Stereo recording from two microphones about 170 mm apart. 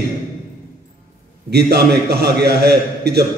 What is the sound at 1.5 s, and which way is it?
A man's voice, 70° right (ahead or behind).